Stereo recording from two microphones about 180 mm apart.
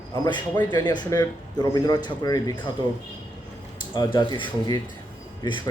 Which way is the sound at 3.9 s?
25° left (ahead or behind).